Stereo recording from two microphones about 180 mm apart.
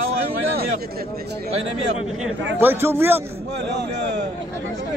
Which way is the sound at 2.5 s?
10° right (ahead or behind).